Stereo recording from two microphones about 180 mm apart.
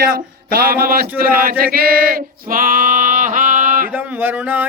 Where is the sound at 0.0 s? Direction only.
55° right (ahead or behind).